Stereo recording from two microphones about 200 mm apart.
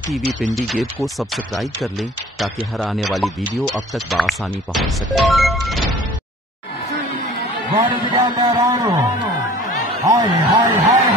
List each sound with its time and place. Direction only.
0.1 s speech: centre (ahead or behind)
7.7 s speech: 20° right (ahead or behind)
10.0 s a man's voice: 15° right (ahead or behind)